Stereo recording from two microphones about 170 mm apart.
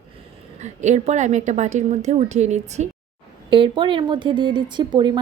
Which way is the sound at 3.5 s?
30° right (ahead or behind).